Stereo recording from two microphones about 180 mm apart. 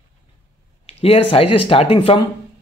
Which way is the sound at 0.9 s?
35° left (ahead or behind).